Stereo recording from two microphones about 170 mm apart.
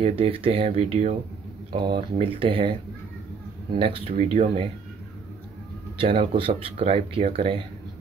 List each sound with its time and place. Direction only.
0.0 s speech: 35° right (ahead or behind)
1.7 s speech: 30° right (ahead or behind)
3.7 s speech: 30° right (ahead or behind)
5.9 s speech: 30° right (ahead or behind)